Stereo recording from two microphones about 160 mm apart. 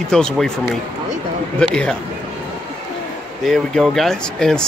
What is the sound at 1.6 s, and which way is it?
Speech, 5° left (ahead or behind).